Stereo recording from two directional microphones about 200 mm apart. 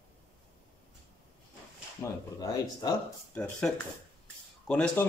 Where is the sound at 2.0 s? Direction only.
15° left (ahead or behind).